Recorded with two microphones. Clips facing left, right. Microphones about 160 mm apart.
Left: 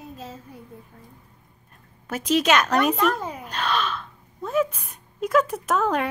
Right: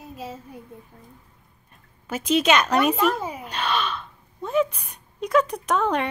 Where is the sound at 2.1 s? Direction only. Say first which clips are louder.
Even; centre (ahead or behind).